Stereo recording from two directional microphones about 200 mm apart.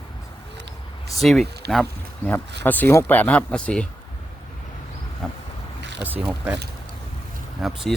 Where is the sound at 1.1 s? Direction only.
Centre (ahead or behind).